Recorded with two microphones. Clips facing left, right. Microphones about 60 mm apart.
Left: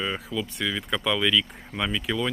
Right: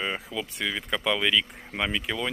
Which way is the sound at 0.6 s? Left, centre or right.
Centre.